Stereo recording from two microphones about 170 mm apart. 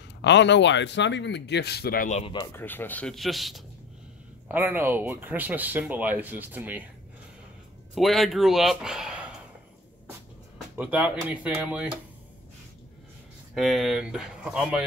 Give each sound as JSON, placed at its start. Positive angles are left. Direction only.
{"t": 0.2, "sound": "speech", "side_deg": 90}
{"t": 2.0, "sound": "speech", "side_deg": 40}
{"t": 2.5, "sound": "speech", "side_deg": 10}
{"t": 4.5, "sound": "speech", "side_deg": -10}
{"t": 7.9, "sound": "speech", "side_deg": 0}
{"t": 10.8, "sound": "speech", "side_deg": -10}
{"t": 13.6, "sound": "speech", "side_deg": 0}